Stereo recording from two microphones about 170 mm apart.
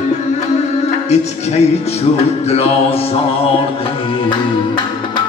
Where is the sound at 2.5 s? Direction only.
35° left (ahead or behind).